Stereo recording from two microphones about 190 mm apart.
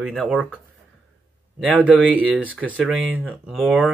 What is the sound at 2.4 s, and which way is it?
Speech, 10° right (ahead or behind).